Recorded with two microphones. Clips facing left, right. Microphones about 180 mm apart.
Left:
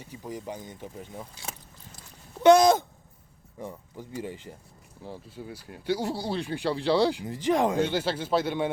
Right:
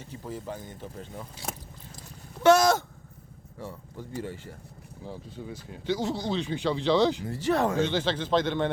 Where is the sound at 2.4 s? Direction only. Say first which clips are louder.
Left 3 dB; 20° left (ahead or behind).